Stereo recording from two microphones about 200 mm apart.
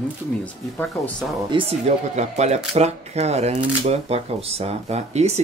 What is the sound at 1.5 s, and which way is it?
Speech, 30° right (ahead or behind).